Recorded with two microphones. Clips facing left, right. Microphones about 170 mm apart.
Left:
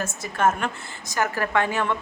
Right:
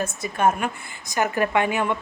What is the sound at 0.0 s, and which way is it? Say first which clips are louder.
A woman's voice: right 1 dB; 15° right (ahead or behind).